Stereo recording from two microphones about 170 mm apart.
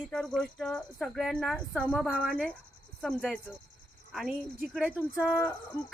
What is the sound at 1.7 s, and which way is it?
Speech, 10° left (ahead or behind).